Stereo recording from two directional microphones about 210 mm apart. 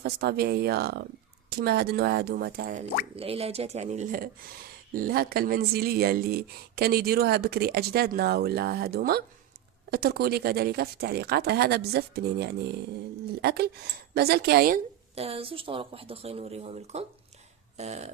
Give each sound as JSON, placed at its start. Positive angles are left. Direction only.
{"t": 0.0, "sound": "speech", "side_deg": -50}
{"t": 3.2, "sound": "speech", "side_deg": -25}
{"t": 15.1, "sound": "speech", "side_deg": -30}